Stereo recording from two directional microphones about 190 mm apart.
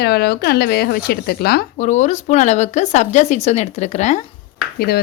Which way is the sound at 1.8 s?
40° left (ahead or behind).